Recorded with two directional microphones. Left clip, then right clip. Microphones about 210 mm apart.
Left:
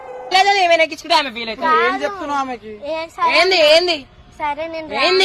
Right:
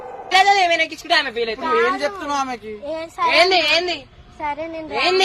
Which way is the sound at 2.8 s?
30° left (ahead or behind).